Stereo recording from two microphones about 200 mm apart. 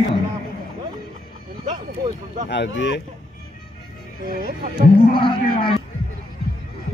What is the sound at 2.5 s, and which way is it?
Speech, 60° left (ahead or behind).